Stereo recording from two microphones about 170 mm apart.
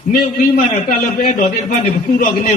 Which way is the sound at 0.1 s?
60° left (ahead or behind).